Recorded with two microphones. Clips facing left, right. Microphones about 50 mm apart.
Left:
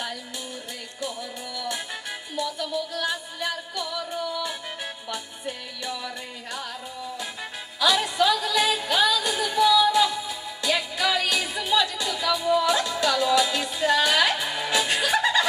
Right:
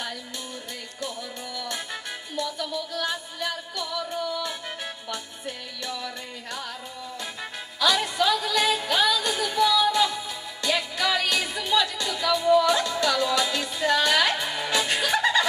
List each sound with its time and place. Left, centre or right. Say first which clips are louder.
1.0 s music: left 1 dB; centre
7.8 s music: left 1 dB; centre